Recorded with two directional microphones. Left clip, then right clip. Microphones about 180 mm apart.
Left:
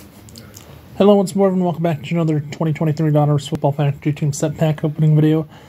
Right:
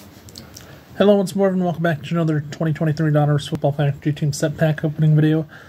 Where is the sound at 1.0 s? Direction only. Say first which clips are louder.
Left 2 dB; centre (ahead or behind).